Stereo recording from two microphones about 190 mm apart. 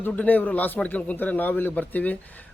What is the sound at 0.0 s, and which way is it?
A man's voice, 10° left (ahead or behind).